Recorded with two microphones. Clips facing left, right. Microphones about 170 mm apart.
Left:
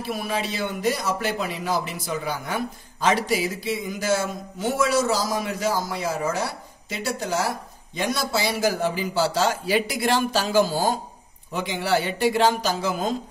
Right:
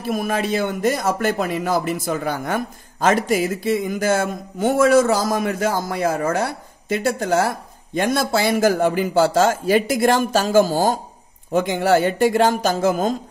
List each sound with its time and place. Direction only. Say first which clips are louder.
0.0 s a man's voice: right 5 dB; 45° right (ahead or behind)